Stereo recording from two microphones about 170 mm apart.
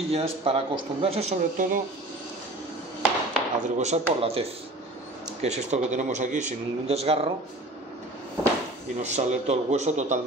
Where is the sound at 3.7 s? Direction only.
40° right (ahead or behind).